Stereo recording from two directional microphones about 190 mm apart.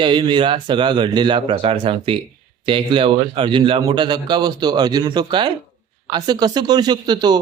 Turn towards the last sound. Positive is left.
turn(degrees=-20)  # may be behind; listen again after turning